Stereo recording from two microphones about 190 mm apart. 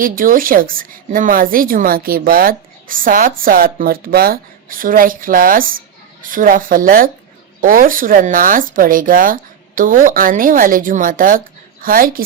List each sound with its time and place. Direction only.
0.0 s speech: 45° right (ahead or behind)